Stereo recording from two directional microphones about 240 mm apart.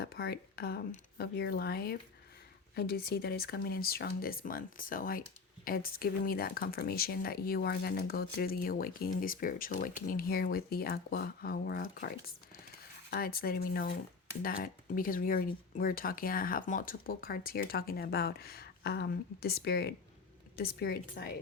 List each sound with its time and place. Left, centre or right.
0.0 s speech: left